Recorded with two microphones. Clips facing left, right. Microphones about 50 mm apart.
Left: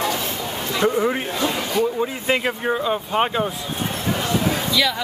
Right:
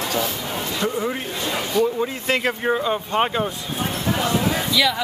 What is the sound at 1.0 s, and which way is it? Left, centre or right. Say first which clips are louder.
Speech: left 4 dB; centre.